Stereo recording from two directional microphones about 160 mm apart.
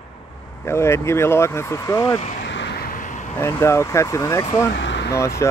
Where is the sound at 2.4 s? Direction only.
90° left; by 3.3 s 55° left (ahead or behind).